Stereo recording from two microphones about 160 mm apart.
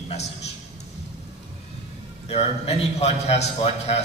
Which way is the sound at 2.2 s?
40° left (ahead or behind).